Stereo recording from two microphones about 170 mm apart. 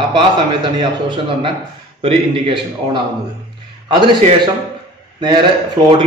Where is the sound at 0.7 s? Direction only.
30° right (ahead or behind).